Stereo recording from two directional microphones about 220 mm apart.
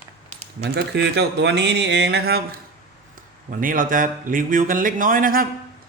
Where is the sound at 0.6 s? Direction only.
50° right (ahead or behind).